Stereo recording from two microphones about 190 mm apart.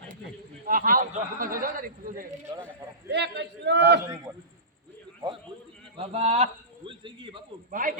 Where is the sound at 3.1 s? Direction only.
65° right (ahead or behind).